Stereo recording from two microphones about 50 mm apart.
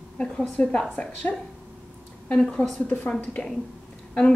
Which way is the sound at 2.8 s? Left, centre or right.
Left.